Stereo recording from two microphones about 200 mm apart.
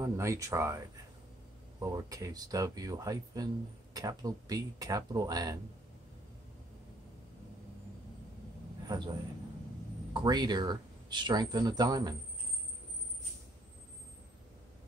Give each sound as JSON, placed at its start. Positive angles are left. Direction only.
{"t": 0.0, "sound": "speech", "side_deg": -15}
{"t": 8.8, "sound": "a man's voice", "side_deg": -20}
{"t": 10.1, "sound": "speech", "side_deg": -20}